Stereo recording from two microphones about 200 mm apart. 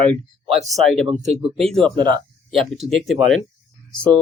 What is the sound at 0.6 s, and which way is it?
Speech, centre (ahead or behind).